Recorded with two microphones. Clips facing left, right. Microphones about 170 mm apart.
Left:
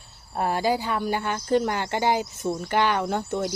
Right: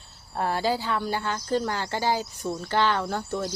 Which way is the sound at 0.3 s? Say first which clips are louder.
Left 2 dB; 15° left (ahead or behind).